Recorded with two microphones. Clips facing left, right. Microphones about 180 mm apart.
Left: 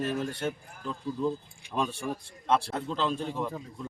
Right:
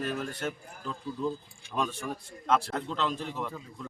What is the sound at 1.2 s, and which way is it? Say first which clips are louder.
Speech: left 2 dB; 15° left (ahead or behind).